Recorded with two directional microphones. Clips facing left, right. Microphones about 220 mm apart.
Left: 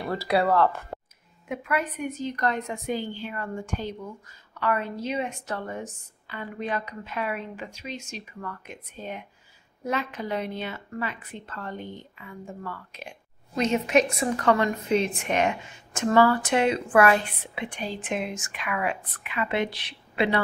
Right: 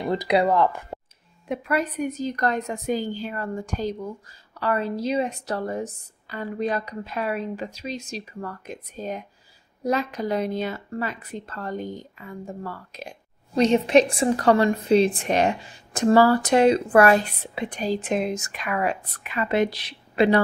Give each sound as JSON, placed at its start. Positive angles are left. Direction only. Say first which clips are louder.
{"t": 0.0, "sound": "speech", "louder": "right 3 dB", "side_deg": -20}
{"t": 1.5, "sound": "a woman's voice", "louder": "right 4 dB", "side_deg": -35}